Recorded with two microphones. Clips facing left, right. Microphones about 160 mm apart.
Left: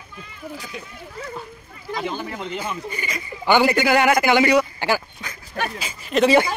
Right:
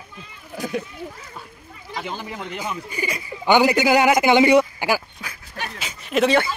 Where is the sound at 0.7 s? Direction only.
60° right (ahead or behind).